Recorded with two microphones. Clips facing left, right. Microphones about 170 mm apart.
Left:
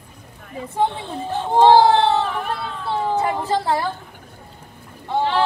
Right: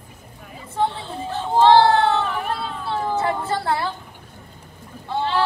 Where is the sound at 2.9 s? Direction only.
15° left (ahead or behind).